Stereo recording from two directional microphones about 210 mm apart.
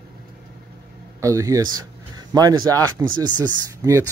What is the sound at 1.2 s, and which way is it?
Speech, 15° right (ahead or behind).